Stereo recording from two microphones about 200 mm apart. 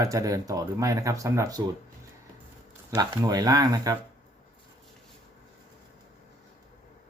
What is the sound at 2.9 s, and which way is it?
Speech, 20° right (ahead or behind).